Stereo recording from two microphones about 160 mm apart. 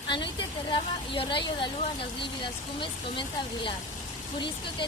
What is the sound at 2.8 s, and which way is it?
A woman's voice, 30° left (ahead or behind).